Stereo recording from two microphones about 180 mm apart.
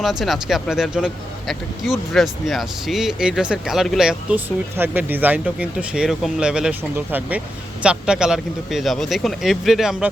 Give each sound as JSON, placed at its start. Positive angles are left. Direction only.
{"t": 0.0, "sound": "speech", "side_deg": 0}